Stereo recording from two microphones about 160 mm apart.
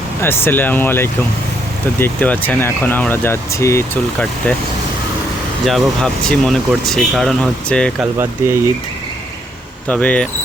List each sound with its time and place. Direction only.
0.2 s speech: 15° left (ahead or behind)
5.6 s speech: centre (ahead or behind)
9.9 s speech: 10° left (ahead or behind)